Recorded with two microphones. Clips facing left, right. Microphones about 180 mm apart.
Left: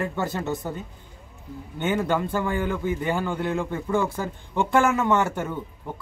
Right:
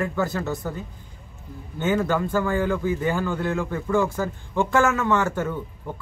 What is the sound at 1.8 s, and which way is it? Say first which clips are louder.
A man's voice: right 2 dB; 20° left (ahead or behind).